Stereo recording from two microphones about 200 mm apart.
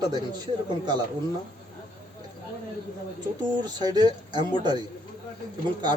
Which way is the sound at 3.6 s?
20° right (ahead or behind).